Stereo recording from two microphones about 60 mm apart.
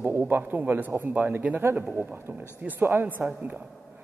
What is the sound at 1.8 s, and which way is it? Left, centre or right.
A man's voice, right.